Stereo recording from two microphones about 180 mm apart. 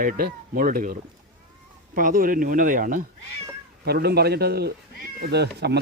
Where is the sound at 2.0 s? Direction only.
50° right (ahead or behind).